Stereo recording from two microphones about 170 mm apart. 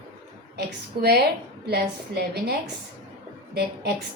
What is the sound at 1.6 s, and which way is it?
A woman's voice, 70° right (ahead or behind).